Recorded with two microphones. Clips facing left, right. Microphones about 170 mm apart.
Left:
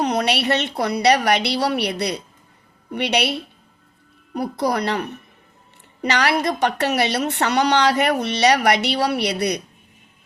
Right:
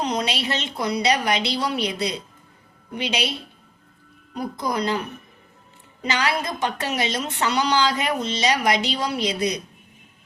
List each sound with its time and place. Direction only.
0.0 s a woman's voice: 60° left (ahead or behind)
4.4 s a woman's voice: 70° left (ahead or behind)